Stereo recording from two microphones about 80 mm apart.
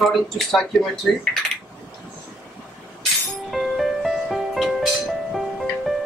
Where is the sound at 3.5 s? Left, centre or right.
Centre.